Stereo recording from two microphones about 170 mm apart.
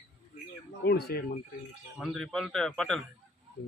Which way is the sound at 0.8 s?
70° left (ahead or behind).